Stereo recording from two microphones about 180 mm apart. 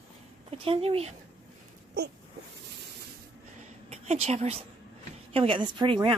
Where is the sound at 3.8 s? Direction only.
35° right (ahead or behind).